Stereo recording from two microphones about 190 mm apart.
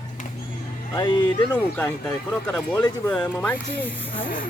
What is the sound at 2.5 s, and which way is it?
Speech, 15° left (ahead or behind).